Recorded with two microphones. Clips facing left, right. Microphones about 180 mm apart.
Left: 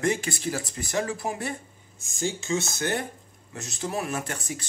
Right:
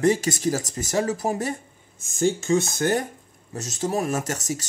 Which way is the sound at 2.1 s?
55° right (ahead or behind).